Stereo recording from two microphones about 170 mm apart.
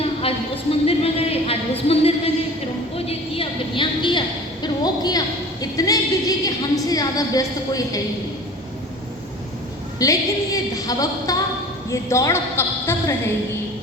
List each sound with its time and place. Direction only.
0.0 s a sound: 35° left (ahead or behind)
6.8 s a woman's voice: 20° left (ahead or behind)
10.0 s a woman's voice: 20° left (ahead or behind)